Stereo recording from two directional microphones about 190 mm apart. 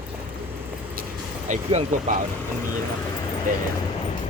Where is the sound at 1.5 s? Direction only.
40° right (ahead or behind).